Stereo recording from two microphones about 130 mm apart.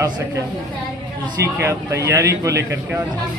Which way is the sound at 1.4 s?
20° right (ahead or behind).